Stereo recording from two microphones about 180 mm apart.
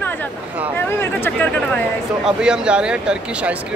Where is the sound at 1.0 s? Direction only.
10° left (ahead or behind).